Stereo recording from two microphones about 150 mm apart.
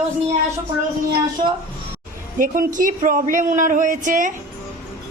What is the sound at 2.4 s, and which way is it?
A woman's voice, 65° right (ahead or behind).